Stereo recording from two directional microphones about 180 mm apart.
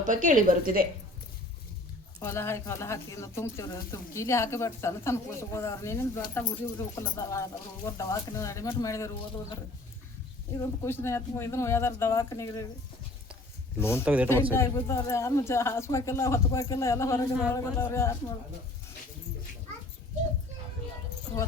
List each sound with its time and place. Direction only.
0.0 s a woman's voice: 45° right (ahead or behind)
2.2 s speech: 15° left (ahead or behind)
10.6 s speech: 15° left (ahead or behind)
13.7 s speech: 15° left (ahead or behind)
14.0 s speech: 10° right (ahead or behind)
14.5 s speech: 15° left (ahead or behind)